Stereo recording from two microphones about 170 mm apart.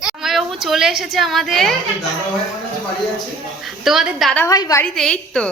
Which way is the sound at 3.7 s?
Centre (ahead or behind).